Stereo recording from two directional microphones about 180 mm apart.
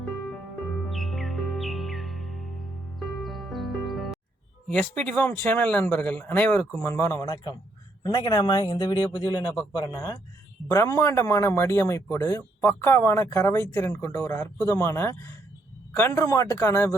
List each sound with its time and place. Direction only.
0.0 s music: centre (ahead or behind)
4.7 s speech: 5° left (ahead or behind)